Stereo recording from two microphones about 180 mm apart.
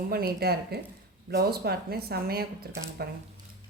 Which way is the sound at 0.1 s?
60° right (ahead or behind).